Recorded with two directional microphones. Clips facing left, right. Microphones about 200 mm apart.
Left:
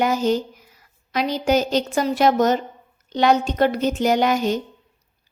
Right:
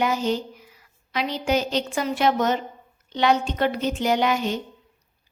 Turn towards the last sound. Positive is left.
turn(degrees=40)  # may be behind; listen again after turning